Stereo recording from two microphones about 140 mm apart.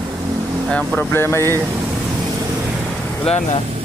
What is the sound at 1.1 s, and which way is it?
Speech, 20° left (ahead or behind).